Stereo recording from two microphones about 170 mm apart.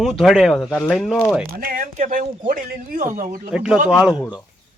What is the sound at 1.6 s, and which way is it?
A man's voice, 55° right (ahead or behind).